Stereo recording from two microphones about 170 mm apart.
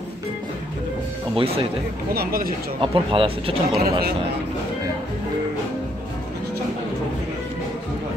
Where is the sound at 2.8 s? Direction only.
30° right (ahead or behind).